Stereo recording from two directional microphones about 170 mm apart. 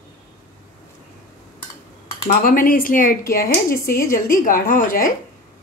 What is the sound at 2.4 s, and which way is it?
Speech, 55° left (ahead or behind).